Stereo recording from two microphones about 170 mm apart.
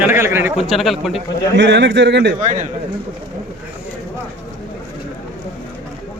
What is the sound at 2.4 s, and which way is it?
Speech, 45° right (ahead or behind).